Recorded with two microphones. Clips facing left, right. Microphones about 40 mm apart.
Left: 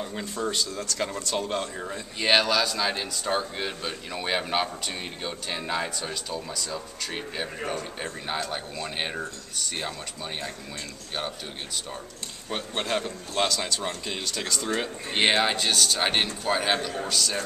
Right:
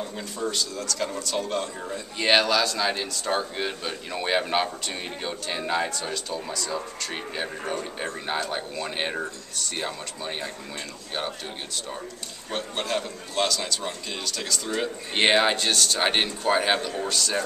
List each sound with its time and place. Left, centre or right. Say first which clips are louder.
0.5 s a man's voice: even; left
2.1 s speech: right 1 dB; centre
12.4 s a man's voice: even; centre
15.1 s speech: right 2 dB; centre